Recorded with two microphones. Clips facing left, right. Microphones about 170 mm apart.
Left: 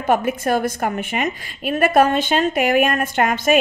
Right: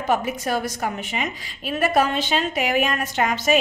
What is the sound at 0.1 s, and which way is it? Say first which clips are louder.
A woman's voice: left 5 dB; 55° left (ahead or behind).